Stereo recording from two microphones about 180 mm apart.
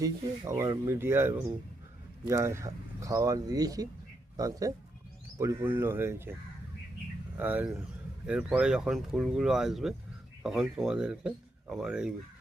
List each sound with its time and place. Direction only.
0.0 s speech: 15° right (ahead or behind)
7.3 s speech: 10° right (ahead or behind)